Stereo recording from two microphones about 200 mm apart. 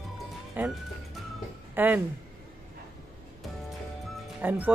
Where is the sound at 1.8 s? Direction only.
10° right (ahead or behind).